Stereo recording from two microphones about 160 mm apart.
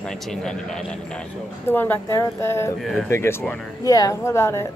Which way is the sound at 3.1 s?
15° left (ahead or behind).